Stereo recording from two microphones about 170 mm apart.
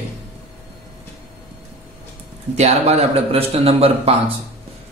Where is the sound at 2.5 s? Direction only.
40° right (ahead or behind).